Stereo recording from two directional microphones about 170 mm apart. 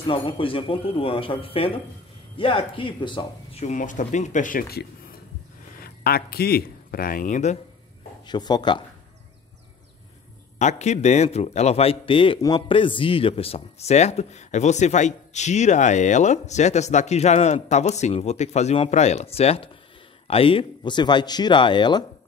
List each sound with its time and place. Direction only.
0.0 s speech: 30° left (ahead or behind)
3.6 s speech: 50° left (ahead or behind)
8.3 s speech: 25° left (ahead or behind)
10.6 s speech: 40° left (ahead or behind); by 22.0 s 25° left (ahead or behind)